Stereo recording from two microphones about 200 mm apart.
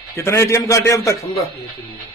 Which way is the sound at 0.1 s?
15° left (ahead or behind).